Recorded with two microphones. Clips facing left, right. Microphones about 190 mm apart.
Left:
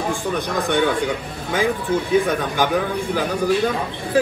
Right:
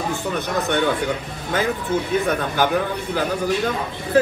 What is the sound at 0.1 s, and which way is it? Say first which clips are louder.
A man's voice: left 1 dB; 10° left (ahead or behind).